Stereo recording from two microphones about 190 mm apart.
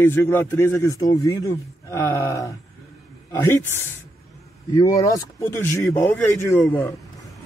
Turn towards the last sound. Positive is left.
turn(degrees=15)  # may be behind; listen again after turning